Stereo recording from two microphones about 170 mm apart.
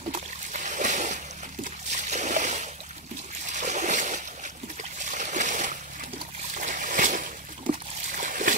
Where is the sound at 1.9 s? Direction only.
45° right (ahead or behind).